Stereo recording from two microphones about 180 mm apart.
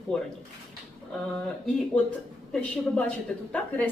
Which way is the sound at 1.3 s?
5° left (ahead or behind).